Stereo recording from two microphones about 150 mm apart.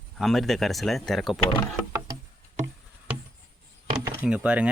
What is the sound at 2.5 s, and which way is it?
Music, 50° right (ahead or behind).